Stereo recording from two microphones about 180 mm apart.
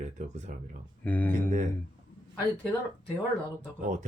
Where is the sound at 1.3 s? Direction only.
45° right (ahead or behind).